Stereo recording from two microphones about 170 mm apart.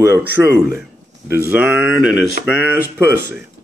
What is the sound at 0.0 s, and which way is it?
A man's voice, 15° right (ahead or behind).